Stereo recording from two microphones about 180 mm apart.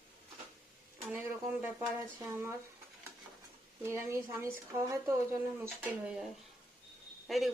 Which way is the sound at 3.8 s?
15° right (ahead or behind).